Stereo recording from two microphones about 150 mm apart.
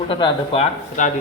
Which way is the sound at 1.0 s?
55° left (ahead or behind).